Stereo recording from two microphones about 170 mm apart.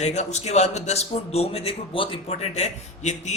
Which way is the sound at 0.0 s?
40° left (ahead or behind).